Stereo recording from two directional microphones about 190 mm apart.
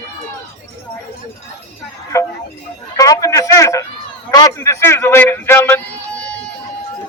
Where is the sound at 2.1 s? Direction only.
15° left (ahead or behind).